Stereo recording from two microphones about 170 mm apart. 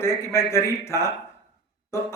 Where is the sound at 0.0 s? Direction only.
15° left (ahead or behind).